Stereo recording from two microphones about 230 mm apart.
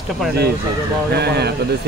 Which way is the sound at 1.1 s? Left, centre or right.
Right.